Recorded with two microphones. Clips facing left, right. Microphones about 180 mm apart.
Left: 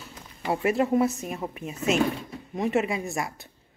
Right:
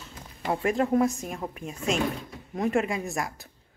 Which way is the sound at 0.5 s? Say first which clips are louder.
Left 1 dB; 5° left (ahead or behind).